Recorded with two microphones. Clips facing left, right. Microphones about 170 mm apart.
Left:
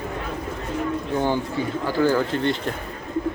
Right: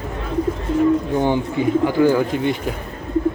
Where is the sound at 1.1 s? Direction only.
20° right (ahead or behind).